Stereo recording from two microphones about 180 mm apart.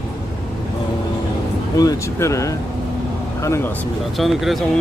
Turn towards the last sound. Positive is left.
turn(degrees=0)  # may be behind; listen again after turning